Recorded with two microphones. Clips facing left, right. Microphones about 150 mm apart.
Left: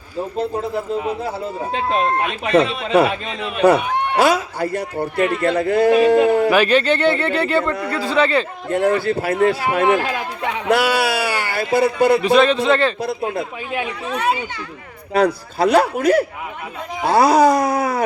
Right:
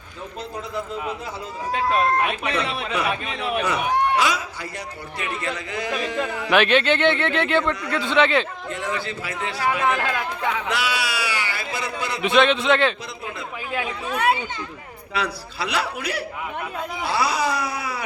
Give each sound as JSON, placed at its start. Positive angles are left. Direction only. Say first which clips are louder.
{"t": 1.7, "sound": "speech", "louder": "left 1 dB", "side_deg": 30}
{"t": 2.6, "sound": "a man's voice", "louder": "left 15 dB", "side_deg": 45}
{"t": 4.1, "sound": "a man's voice", "louder": "left 6 dB", "side_deg": 50}
{"t": 6.5, "sound": "speech", "louder": "left 3 dB", "side_deg": 5}
{"t": 8.7, "sound": "a man's voice", "louder": "left 12 dB", "side_deg": 50}
{"t": 10.0, "sound": "speech", "louder": "left 2 dB", "side_deg": 25}
{"t": 10.7, "sound": "a man's voice", "louder": "left 9 dB", "side_deg": 45}
{"t": 12.2, "sound": "speech", "louder": "left 4 dB", "side_deg": 0}
{"t": 13.1, "sound": "speech", "louder": "left 11 dB", "side_deg": 55}
{"t": 14.1, "sound": "speech", "louder": "left 1 dB", "side_deg": -5}
{"t": 15.1, "sound": "a man's voice", "louder": "left 11 dB", "side_deg": 45}